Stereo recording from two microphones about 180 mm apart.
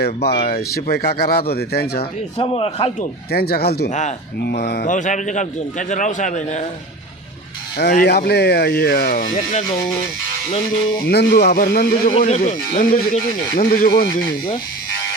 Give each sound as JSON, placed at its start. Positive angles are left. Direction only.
{"t": 0.0, "sound": "speech", "side_deg": 65}
{"t": 2.4, "sound": "a man's voice", "side_deg": 30}
{"t": 3.3, "sound": "speech", "side_deg": 60}
{"t": 3.8, "sound": "a man's voice", "side_deg": 40}
{"t": 4.4, "sound": "speech", "side_deg": 65}
{"t": 4.9, "sound": "speech", "side_deg": 45}
{"t": 7.8, "sound": "speech", "side_deg": 65}
{"t": 10.9, "sound": "speech", "side_deg": 60}
{"t": 12.2, "sound": "speech", "side_deg": 45}